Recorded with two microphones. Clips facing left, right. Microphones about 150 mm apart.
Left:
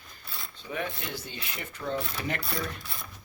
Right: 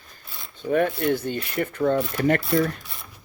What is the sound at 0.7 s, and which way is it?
Coin, 55° right (ahead or behind).